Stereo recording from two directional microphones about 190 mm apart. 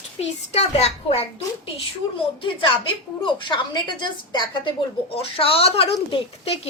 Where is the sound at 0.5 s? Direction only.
35° left (ahead or behind).